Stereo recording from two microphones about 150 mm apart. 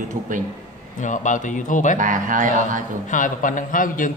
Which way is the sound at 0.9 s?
55° left (ahead or behind).